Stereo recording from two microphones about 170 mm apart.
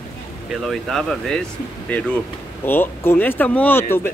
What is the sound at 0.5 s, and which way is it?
Speech, centre (ahead or behind).